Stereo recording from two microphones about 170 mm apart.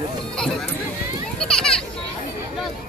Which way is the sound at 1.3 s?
5° left (ahead or behind).